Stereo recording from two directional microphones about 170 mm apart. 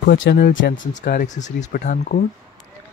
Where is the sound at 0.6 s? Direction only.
90° left.